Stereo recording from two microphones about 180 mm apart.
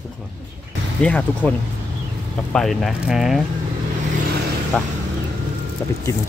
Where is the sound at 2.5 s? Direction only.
Centre (ahead or behind).